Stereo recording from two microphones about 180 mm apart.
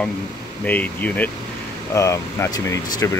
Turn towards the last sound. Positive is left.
turn(degrees=20)  # may be behind; listen again after turning